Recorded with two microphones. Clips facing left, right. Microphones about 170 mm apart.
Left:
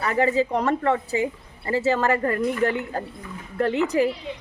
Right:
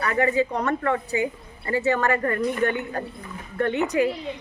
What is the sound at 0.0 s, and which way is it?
A woman's voice, 30° left (ahead or behind).